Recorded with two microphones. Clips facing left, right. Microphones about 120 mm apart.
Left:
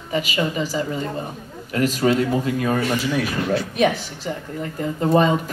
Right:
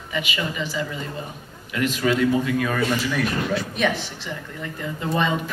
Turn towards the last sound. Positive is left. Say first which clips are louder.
# left 6 dB
turn(degrees=40)  # may be behind; listen again after turning